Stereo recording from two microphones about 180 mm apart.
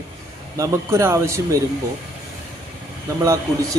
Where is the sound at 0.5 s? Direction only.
15° right (ahead or behind).